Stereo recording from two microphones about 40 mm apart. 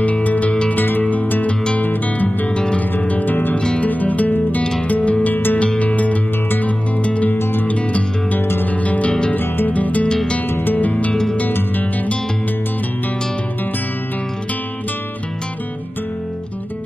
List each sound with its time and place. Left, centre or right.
0.0 s music: left
2.2 s music: left
3.1 s music: left
3.5 s music: left
3.8 s music: left
5.2 s music: left
5.8 s music: left
7.3 s music: left
7.6 s music: left
8.4 s music: left
8.6 s music: left
9.3 s music: left
9.7 s music: left